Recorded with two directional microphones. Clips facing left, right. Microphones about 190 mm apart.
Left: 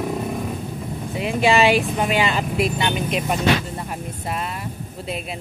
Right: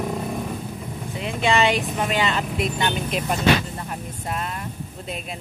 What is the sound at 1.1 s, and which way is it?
Speech, 15° left (ahead or behind).